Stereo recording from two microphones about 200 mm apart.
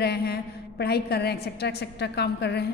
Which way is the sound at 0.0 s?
55° left (ahead or behind).